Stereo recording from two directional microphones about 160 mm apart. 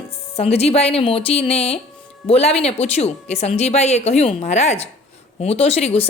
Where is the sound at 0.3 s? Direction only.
40° left (ahead or behind).